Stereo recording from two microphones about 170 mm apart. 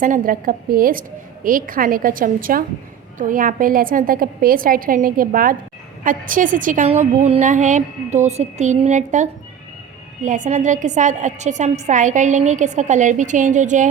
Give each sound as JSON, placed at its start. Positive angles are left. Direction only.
{"t": 0.0, "sound": "a woman's voice", "side_deg": -55}